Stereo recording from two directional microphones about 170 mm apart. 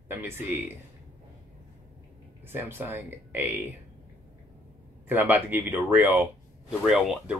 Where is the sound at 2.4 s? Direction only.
10° right (ahead or behind).